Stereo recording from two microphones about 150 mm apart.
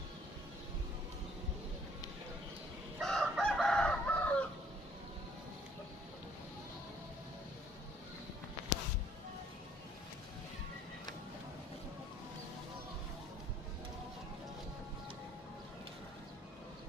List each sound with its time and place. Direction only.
3.0 s chicken: 5° left (ahead or behind)